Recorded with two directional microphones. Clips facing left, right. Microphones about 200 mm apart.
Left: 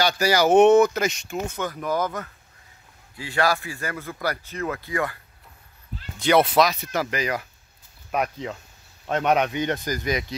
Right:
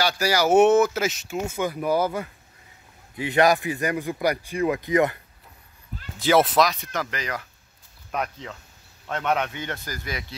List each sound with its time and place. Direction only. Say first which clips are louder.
0.0 s speech: left 2 dB; 10° right (ahead or behind)
6.1 s speech: left 1 dB; centre (ahead or behind); by 10.2 s 20° left (ahead or behind)